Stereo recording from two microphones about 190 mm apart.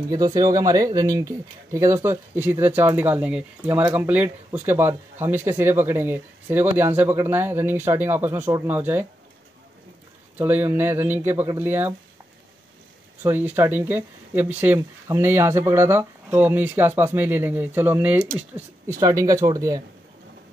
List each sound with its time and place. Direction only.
0.1 s speech: 20° right (ahead or behind)
10.3 s speech: 10° right (ahead or behind)
13.2 s speech: 10° right (ahead or behind)